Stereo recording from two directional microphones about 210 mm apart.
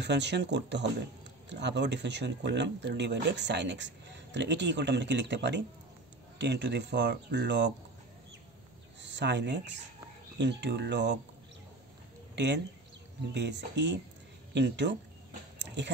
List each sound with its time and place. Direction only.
0.0 s speech: 55° right (ahead or behind)
9.0 s speech: 55° right (ahead or behind)
12.4 s speech: 55° right (ahead or behind)
15.6 s a sound: 55° right (ahead or behind)